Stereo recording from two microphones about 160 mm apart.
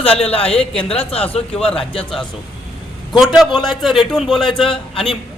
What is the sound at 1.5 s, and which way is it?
Speech, 5° left (ahead or behind).